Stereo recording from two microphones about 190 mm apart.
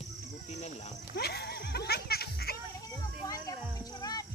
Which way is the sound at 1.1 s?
60° left (ahead or behind).